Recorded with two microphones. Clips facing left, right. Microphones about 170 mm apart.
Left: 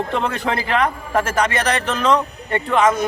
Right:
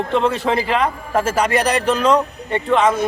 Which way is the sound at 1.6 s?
10° right (ahead or behind).